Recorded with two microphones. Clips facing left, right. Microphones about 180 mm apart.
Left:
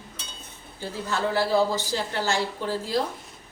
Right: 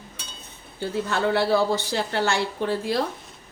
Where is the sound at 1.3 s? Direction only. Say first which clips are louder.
Right 1 dB; 65° right (ahead or behind).